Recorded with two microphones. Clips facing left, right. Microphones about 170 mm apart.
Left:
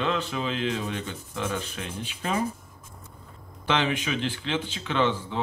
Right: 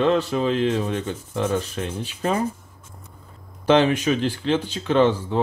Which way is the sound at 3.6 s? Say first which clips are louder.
Right 9 dB; 40° right (ahead or behind).